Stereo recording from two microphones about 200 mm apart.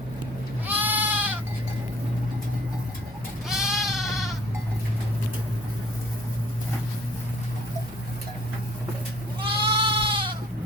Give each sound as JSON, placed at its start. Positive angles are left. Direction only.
{"t": 0.7, "sound": "goat", "side_deg": -10}
{"t": 3.5, "sound": "sheep", "side_deg": 0}
{"t": 9.4, "sound": "goat", "side_deg": -25}